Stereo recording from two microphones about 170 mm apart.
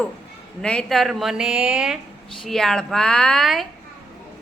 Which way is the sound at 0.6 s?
5° left (ahead or behind).